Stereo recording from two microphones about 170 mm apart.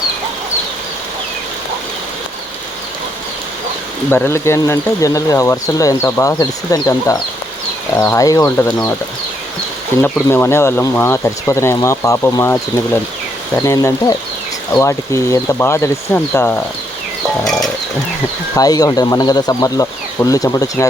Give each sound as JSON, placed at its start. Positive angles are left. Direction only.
{"t": 4.1, "sound": "speech", "side_deg": 15}
{"t": 10.0, "sound": "speech", "side_deg": 15}
{"t": 13.6, "sound": "speech", "side_deg": 20}
{"t": 17.4, "sound": "music", "side_deg": 0}
{"t": 18.5, "sound": "speech", "side_deg": 20}